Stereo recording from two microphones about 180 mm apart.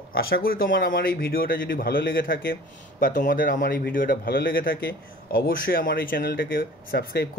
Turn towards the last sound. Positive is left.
turn(degrees=55)  # may be behind; listen again after turning